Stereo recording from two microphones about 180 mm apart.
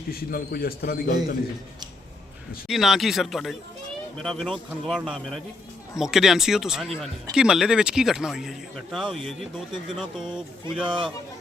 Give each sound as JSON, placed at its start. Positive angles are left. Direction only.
{"t": 0.1, "sound": "a man's voice", "side_deg": 55}
{"t": 2.6, "sound": "speech", "side_deg": 0}
{"t": 10.8, "sound": "speech", "side_deg": -25}